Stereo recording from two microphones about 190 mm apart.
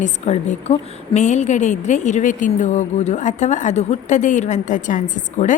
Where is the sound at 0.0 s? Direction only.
35° left (ahead or behind).